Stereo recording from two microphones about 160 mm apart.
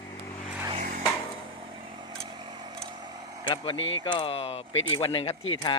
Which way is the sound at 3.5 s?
30° left (ahead or behind).